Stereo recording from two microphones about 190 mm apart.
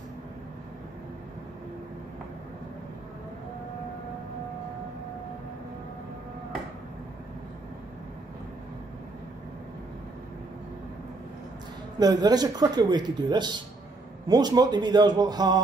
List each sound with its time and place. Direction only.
12.0 s speech: 20° right (ahead or behind)